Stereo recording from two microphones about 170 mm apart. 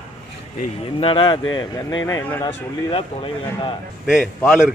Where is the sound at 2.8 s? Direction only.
30° left (ahead or behind).